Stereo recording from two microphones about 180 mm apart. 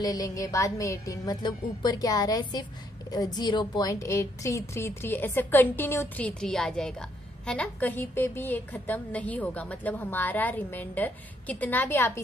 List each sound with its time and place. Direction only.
0.0 s a woman's voice: 20° left (ahead or behind)